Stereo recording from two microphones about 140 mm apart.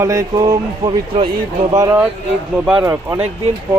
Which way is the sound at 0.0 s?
25° right (ahead or behind).